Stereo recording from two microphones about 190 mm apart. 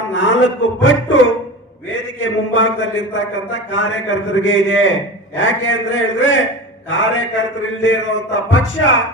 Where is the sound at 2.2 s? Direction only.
80° left.